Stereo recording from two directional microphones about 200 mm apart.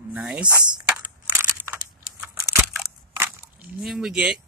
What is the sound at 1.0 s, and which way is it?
Crumpling, 10° right (ahead or behind).